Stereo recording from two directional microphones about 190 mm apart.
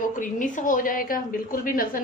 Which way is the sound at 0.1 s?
45° left (ahead or behind).